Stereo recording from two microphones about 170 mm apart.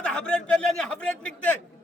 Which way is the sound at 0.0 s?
5° left (ahead or behind).